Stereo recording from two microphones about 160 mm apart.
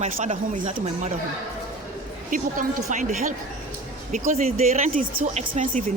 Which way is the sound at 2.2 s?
55° right (ahead or behind).